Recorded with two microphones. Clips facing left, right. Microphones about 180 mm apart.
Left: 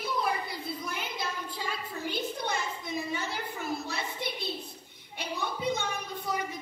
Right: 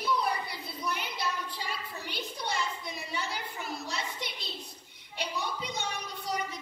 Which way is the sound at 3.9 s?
55° left (ahead or behind).